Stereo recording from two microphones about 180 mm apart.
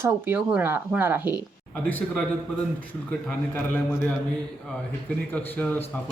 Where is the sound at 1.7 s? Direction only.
10° left (ahead or behind).